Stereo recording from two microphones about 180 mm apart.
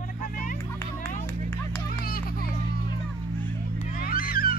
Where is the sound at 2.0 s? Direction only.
55° left (ahead or behind).